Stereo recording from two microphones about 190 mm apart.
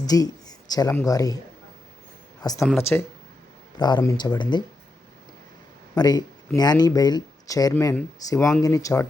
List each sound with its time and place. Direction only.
0.0 s speech: 20° left (ahead or behind)
2.4 s speech: 20° left (ahead or behind)
6.0 s speech: 20° left (ahead or behind)
8.4 s speech: 5° left (ahead or behind)
8.6 s speech: 15° left (ahead or behind)